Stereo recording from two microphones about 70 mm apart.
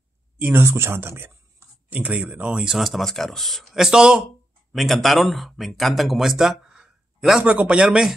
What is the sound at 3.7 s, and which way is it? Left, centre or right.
Speech, centre.